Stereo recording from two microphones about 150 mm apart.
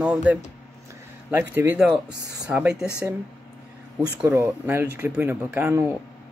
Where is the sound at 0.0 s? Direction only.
10° right (ahead or behind).